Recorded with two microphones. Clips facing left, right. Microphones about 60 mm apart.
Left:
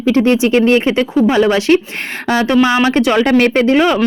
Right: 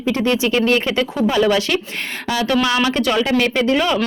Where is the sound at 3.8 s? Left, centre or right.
Left.